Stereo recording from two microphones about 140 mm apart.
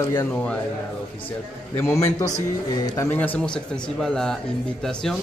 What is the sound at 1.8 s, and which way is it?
Speech, 20° left (ahead or behind).